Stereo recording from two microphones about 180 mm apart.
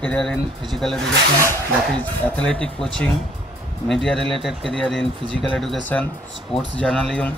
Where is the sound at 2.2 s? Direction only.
5° left (ahead or behind).